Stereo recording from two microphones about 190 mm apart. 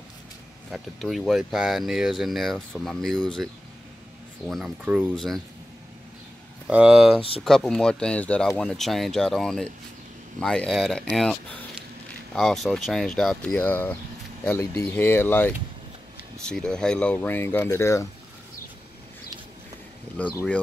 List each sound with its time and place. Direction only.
0.7 s speech: centre (ahead or behind)
4.5 s speech: centre (ahead or behind)
6.7 s speech: 5° right (ahead or behind)
7.2 s speech: 30° left (ahead or behind)
7.4 s speech: centre (ahead or behind)
20.2 s speech: 10° left (ahead or behind)